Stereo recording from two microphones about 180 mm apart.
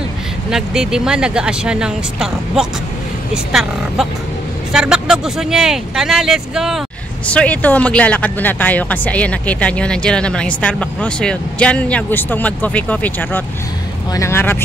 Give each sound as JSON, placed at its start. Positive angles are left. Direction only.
{"t": 0.5, "sound": "speech", "side_deg": -5}
{"t": 4.7, "sound": "speech", "side_deg": -5}
{"t": 7.2, "sound": "speech", "side_deg": 5}